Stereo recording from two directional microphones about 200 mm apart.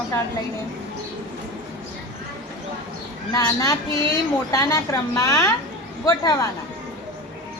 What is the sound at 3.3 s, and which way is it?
A woman's voice, 15° left (ahead or behind).